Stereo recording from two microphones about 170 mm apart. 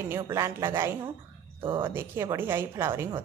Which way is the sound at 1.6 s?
30° right (ahead or behind).